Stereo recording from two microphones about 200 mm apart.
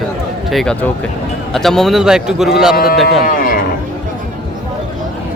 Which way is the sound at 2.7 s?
50° left (ahead or behind).